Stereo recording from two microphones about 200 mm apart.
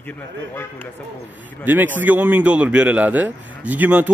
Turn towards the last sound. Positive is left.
turn(degrees=-10)  # may be behind; listen again after turning